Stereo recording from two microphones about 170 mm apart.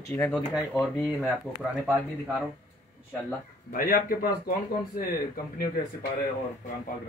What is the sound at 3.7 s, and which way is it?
Speech, 60° left (ahead or behind).